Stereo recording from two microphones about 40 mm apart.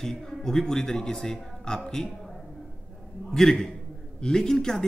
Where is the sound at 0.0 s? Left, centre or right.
Centre.